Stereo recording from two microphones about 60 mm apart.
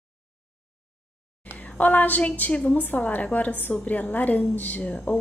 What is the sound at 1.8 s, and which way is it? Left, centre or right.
A woman's voice, left.